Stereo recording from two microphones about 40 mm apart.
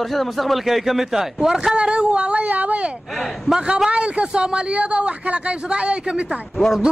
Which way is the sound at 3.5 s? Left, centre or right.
Right.